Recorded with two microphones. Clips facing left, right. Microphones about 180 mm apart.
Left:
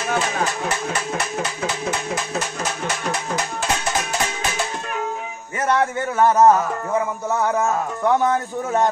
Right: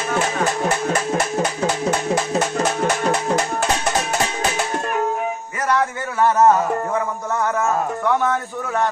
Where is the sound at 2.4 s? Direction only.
55° right (ahead or behind).